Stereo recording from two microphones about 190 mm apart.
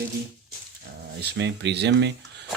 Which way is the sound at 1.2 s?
65° right (ahead or behind).